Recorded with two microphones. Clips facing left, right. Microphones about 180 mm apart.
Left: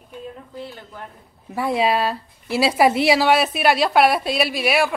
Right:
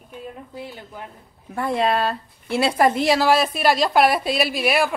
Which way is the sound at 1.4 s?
5° left (ahead or behind).